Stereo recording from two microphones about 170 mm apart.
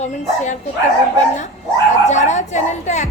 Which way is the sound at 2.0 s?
45° left (ahead or behind).